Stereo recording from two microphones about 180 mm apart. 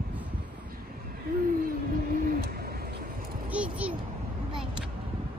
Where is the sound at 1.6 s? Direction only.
55° right (ahead or behind).